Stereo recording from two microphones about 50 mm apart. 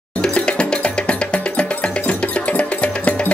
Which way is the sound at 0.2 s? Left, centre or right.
Centre.